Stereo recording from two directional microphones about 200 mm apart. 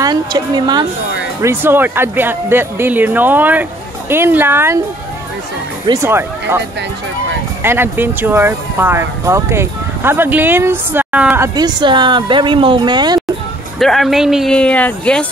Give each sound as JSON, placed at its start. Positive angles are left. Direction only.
{"t": 0.0, "sound": "speech", "side_deg": -20}
{"t": 5.9, "sound": "speech", "side_deg": -20}
{"t": 13.7, "sound": "speech", "side_deg": 0}